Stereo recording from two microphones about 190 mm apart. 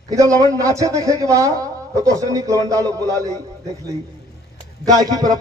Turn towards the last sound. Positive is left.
turn(degrees=-20)  # may be behind; listen again after turning